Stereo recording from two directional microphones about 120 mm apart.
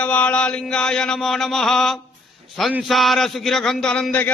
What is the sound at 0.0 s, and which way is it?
Mantra, 10° left (ahead or behind).